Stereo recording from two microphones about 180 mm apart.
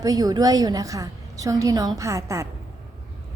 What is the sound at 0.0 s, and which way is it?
A woman's voice, 20° right (ahead or behind).